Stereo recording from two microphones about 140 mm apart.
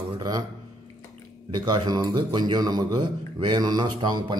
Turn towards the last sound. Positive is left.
turn(degrees=-30)  # may be behind; listen again after turning